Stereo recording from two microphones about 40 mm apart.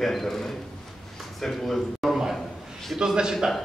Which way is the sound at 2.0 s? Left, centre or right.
Centre.